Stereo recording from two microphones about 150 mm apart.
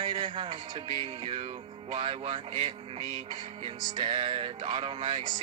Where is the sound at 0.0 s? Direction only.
35° right (ahead or behind).